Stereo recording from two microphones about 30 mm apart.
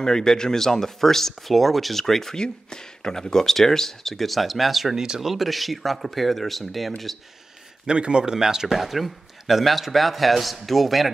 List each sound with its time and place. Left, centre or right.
0.0 s speech: centre
2.3 s a man's voice: left; by 4.9 s centre
4.9 s speech: right
5.2 s a man's voice: centre
7.8 s speech: right; by 8.7 s centre
8.7 s a man's voice: centre